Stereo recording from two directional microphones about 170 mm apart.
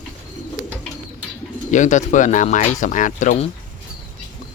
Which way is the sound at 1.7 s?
45° left (ahead or behind).